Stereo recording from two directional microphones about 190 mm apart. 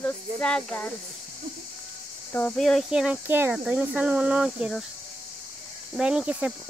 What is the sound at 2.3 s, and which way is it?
Speech, 5° left (ahead or behind).